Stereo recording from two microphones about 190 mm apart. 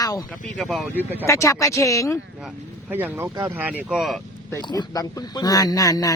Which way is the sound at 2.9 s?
10° right (ahead or behind).